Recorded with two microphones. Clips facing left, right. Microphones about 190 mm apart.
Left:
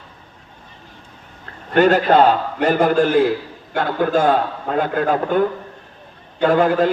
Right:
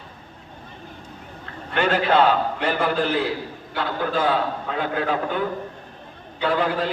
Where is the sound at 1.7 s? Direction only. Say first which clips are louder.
Left 6 dB; 45° left (ahead or behind).